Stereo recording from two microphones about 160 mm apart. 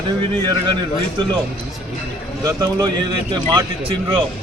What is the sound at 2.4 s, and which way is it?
A man's voice, 20° right (ahead or behind).